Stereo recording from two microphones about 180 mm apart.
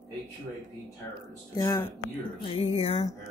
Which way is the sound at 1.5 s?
15° left (ahead or behind).